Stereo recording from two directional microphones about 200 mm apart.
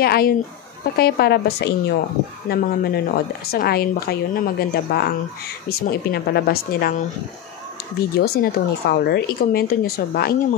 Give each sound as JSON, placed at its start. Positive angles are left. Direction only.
{"t": 0.0, "sound": "speech", "side_deg": 50}
{"t": 8.2, "sound": "speech", "side_deg": 50}